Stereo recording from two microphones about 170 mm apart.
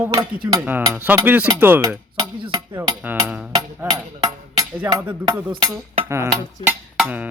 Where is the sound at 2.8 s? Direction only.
10° right (ahead or behind).